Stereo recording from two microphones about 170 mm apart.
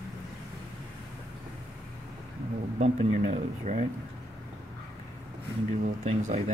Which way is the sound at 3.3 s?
40° right (ahead or behind).